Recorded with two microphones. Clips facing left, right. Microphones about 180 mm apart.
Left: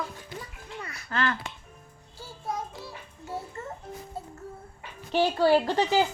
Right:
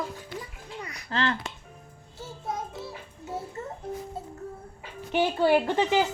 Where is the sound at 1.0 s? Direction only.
30° right (ahead or behind).